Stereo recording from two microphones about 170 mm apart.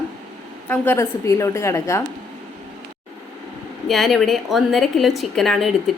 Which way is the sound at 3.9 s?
Centre (ahead or behind).